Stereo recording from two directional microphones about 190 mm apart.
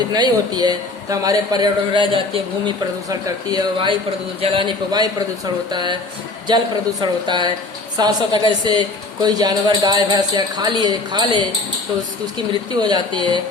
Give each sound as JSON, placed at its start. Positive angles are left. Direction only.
{"t": 0.1, "sound": "a man's voice", "side_deg": -20}
{"t": 7.0, "sound": "a man's voice", "side_deg": -25}
{"t": 12.8, "sound": "a man's voice", "side_deg": -25}